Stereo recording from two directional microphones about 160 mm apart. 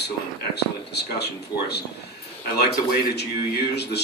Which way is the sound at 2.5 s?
85° left.